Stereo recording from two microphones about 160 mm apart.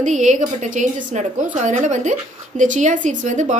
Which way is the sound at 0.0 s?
50° right (ahead or behind).